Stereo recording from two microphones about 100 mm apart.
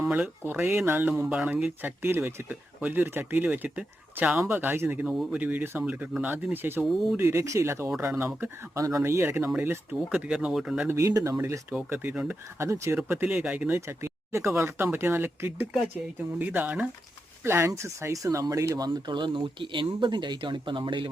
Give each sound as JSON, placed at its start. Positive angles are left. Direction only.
{"t": 0.1, "sound": "speech", "side_deg": -15}
{"t": 10.8, "sound": "speech", "side_deg": -35}
{"t": 11.9, "sound": "speech", "side_deg": -15}
{"t": 12.5, "sound": "speech", "side_deg": -30}
{"t": 13.0, "sound": "speech", "side_deg": -20}